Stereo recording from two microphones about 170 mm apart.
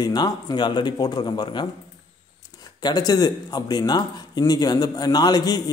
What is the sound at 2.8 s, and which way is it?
A man's voice, 25° left (ahead or behind).